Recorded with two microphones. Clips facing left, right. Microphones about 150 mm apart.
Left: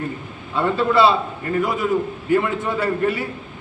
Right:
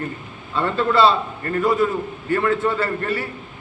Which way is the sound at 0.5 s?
10° left (ahead or behind).